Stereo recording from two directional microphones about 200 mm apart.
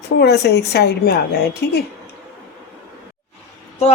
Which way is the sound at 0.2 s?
55° left (ahead or behind).